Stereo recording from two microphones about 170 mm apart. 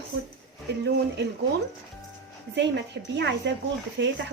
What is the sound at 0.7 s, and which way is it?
Speech, 90° right.